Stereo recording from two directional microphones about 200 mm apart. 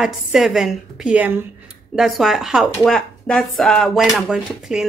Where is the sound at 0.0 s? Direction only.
Centre (ahead or behind).